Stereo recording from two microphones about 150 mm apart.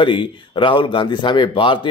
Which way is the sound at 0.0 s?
35° left (ahead or behind).